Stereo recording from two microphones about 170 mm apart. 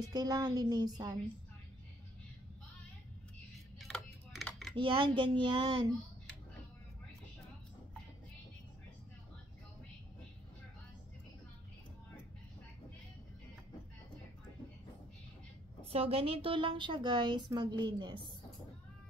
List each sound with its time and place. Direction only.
0.0 s a woman's voice: 25° right (ahead or behind)
3.8 s a sound: 5° left (ahead or behind)
4.7 s a woman's voice: 30° right (ahead or behind)
15.9 s a woman's voice: 35° right (ahead or behind)